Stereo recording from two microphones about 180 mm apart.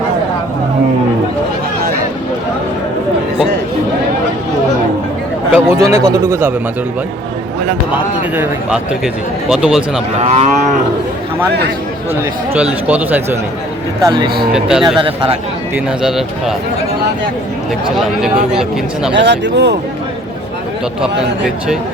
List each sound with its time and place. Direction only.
5.5 s a man's voice: 15° right (ahead or behind)
8.4 s speech: 5° right (ahead or behind)
10.2 s moo: 40° right (ahead or behind)
12.9 s speech: 10° right (ahead or behind)
14.0 s speech: 25° right (ahead or behind)
14.5 s speech: 5° right (ahead or behind)
14.9 s speech: 30° right (ahead or behind)
15.7 s speech: 5° right (ahead or behind)
17.9 s speech: 5° right (ahead or behind)
19.1 s speech: 75° right (ahead or behind)
21.0 s speech: 5° right (ahead or behind)